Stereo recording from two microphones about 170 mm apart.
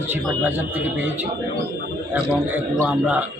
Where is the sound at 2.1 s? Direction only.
10° right (ahead or behind).